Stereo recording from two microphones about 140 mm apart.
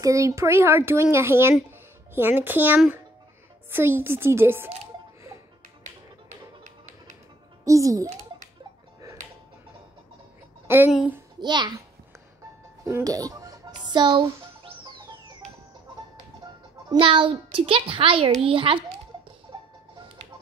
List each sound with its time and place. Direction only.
0.0 s a child's voice: 20° right (ahead or behind)
7.6 s a child's voice: 25° right (ahead or behind)
9.0 s music: 25° right (ahead or behind)
10.9 s a child's voice: 5° right (ahead or behind)
11.3 s a child's voice: 30° right (ahead or behind)
12.8 s music: 20° right (ahead or behind); by 14.7 s 35° right (ahead or behind)
17.0 s a child's voice: 40° right (ahead or behind)